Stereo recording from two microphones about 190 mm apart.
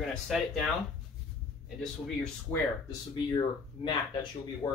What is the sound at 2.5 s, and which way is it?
Speech, 20° left (ahead or behind).